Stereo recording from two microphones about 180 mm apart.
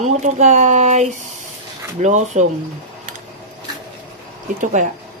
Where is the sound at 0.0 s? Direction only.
40° right (ahead or behind).